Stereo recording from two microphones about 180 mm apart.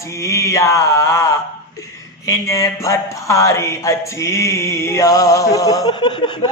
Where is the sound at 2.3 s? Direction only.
20° left (ahead or behind).